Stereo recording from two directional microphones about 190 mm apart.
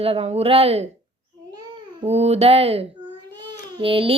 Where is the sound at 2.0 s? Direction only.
35° right (ahead or behind).